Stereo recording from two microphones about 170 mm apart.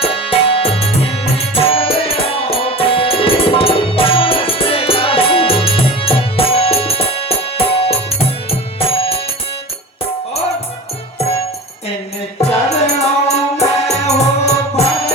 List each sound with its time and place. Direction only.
0.0 s music: 35° left (ahead or behind)
12.4 s music: 35° left (ahead or behind)